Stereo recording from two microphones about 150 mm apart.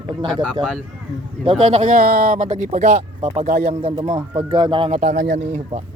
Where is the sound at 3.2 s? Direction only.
40° right (ahead or behind).